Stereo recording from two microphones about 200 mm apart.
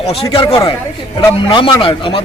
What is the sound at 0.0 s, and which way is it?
A man's voice, 30° left (ahead or behind).